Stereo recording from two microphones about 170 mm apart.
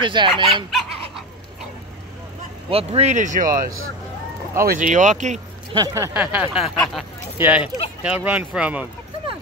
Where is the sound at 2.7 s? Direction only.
35° right (ahead or behind).